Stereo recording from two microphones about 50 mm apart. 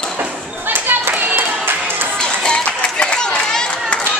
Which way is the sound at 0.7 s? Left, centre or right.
Right.